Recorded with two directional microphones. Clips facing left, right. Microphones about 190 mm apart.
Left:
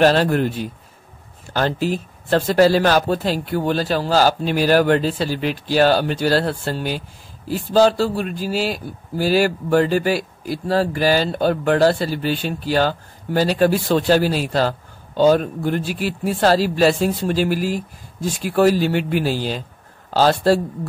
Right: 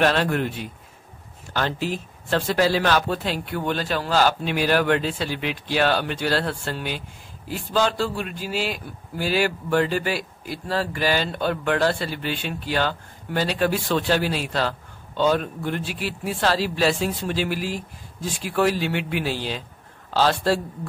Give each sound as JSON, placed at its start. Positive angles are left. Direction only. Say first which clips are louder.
{"t": 0.0, "sound": "a man's voice", "louder": "left 5 dB", "side_deg": 35}